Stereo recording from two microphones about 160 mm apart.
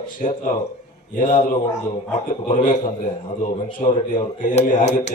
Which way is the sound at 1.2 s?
50° left (ahead or behind).